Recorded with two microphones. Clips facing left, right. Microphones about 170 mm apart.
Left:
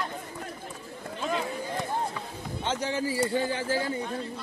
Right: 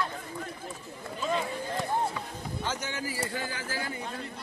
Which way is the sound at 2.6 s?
30° left (ahead or behind).